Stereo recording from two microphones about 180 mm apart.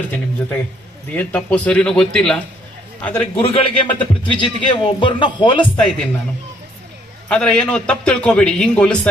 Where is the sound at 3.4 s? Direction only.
30° left (ahead or behind).